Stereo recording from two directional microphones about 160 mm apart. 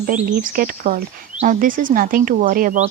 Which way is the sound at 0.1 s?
60° right (ahead or behind).